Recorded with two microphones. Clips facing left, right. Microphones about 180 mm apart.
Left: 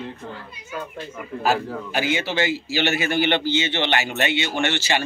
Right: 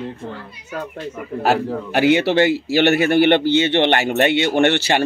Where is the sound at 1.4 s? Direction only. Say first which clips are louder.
Right 4 dB; 65° right (ahead or behind).